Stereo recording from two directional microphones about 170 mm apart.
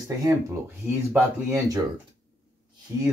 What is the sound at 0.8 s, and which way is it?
Speech, 15° right (ahead or behind).